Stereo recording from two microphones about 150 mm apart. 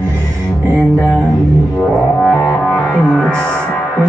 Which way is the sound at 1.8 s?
5° left (ahead or behind).